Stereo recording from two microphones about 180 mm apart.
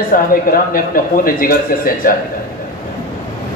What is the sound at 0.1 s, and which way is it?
A man's voice, 50° left (ahead or behind).